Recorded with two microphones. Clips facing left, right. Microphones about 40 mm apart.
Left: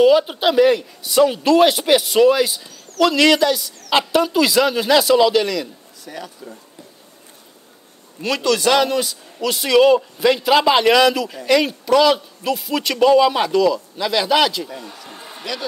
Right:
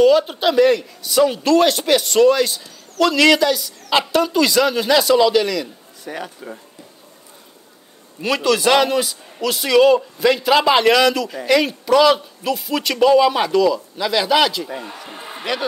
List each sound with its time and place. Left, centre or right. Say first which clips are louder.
0.2 s a man's voice: even; centre
6.0 s speech: right 4 dB; right
8.2 s a man's voice: right 1 dB; centre
14.7 s a sound: right 4 dB; right